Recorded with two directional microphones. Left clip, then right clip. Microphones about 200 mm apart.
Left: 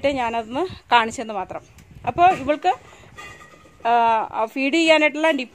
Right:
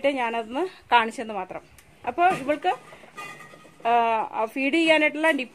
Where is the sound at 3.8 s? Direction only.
40° left (ahead or behind).